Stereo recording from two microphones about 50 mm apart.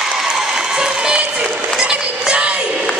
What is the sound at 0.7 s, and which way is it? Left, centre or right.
Music, centre.